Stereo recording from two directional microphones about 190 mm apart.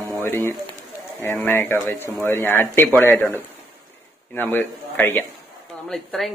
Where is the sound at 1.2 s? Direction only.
10° left (ahead or behind).